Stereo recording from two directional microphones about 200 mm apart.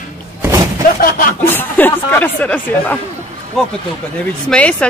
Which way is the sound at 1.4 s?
10° left (ahead or behind).